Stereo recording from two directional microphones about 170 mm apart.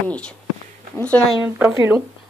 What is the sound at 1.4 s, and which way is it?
Speech, 10° right (ahead or behind).